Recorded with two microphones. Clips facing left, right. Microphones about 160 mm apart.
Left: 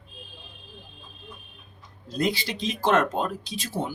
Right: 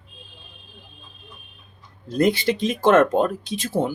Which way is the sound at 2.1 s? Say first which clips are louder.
Right 8 dB; 50° right (ahead or behind).